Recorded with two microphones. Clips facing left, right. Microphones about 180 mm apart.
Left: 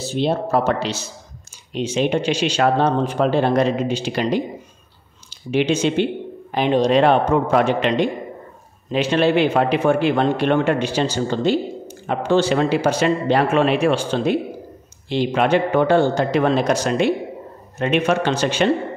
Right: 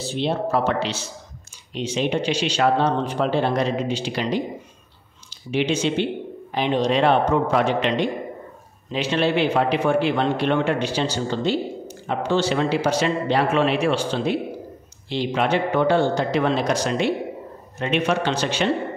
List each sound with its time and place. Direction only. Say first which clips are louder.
0.0 s speech: left 3 dB; 40° left (ahead or behind)
5.5 s speech: left 3 dB; 50° left (ahead or behind)
8.9 s speech: left 4 dB; 50° left (ahead or behind)